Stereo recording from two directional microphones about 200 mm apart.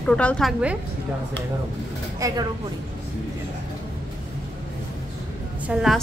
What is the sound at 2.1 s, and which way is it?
Speech, 15° right (ahead or behind).